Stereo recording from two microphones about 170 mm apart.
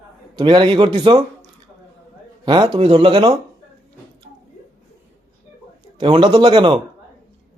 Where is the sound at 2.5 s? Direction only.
25° right (ahead or behind).